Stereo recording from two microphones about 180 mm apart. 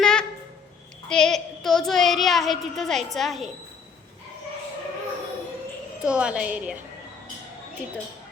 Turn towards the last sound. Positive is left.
turn(degrees=-5)  # may be behind; listen again after turning